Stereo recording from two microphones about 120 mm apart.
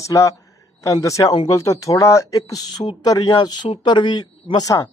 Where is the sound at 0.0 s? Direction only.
25° left (ahead or behind).